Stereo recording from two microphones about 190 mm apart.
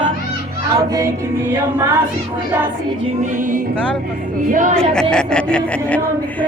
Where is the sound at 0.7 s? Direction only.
15° right (ahead or behind).